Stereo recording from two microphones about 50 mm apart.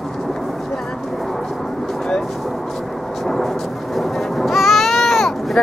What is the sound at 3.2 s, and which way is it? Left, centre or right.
Thunder, centre.